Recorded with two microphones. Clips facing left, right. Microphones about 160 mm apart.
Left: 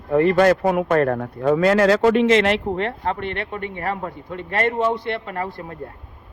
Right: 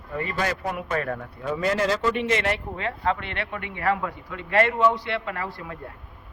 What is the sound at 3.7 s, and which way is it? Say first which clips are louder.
A man's voice: right 5 dB; 45° left (ahead or behind).